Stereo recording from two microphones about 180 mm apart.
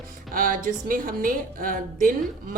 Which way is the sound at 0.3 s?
50° right (ahead or behind).